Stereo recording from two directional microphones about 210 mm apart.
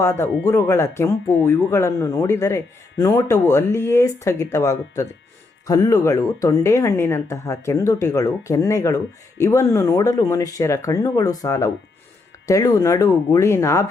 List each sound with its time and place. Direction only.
0.0 s speech: 15° left (ahead or behind)